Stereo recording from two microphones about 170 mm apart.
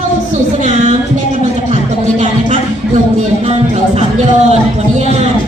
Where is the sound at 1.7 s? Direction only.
45° right (ahead or behind).